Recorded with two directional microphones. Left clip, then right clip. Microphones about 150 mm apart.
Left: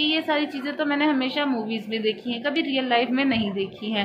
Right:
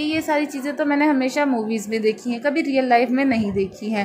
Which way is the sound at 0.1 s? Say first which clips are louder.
Right 2 dB; 30° right (ahead or behind).